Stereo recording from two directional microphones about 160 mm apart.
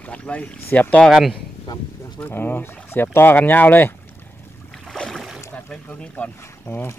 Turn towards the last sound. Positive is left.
turn(degrees=15)  # may be behind; listen again after turning